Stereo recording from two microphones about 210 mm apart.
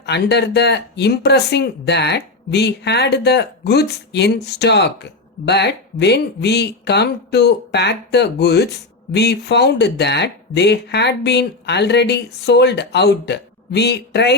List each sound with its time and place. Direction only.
0.0 s speech: 55° left (ahead or behind)